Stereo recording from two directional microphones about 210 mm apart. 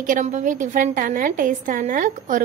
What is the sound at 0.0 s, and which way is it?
A woman's voice, 40° right (ahead or behind).